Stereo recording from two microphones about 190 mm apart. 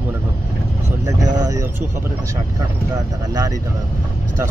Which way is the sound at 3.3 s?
20° right (ahead or behind).